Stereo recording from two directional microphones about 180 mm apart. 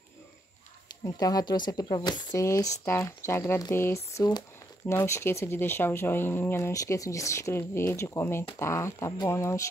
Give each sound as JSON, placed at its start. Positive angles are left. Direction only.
{"t": 1.0, "sound": "speech", "side_deg": 20}